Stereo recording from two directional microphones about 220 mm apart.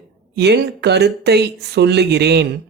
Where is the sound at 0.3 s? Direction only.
50° right (ahead or behind).